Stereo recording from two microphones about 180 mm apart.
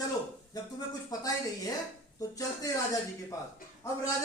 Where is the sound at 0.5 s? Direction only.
20° left (ahead or behind).